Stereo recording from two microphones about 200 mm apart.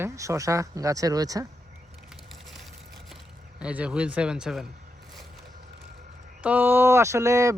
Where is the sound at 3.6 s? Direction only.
5° right (ahead or behind).